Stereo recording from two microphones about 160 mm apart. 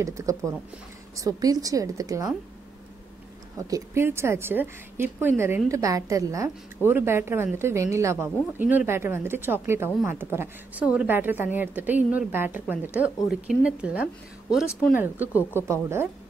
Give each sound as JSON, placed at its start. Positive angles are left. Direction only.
{"t": 0.0, "sound": "a woman's voice", "side_deg": -20}
{"t": 3.5, "sound": "a woman's voice", "side_deg": -20}